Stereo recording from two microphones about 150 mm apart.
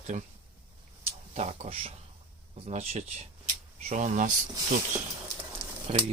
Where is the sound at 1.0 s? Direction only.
45° right (ahead or behind).